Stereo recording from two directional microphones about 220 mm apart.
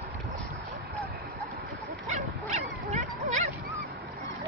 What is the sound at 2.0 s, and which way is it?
Dog, 30° right (ahead or behind).